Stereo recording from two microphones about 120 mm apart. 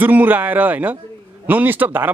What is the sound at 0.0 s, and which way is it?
Speech, 15° right (ahead or behind).